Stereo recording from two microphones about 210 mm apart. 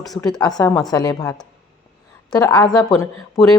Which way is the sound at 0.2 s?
20° left (ahead or behind).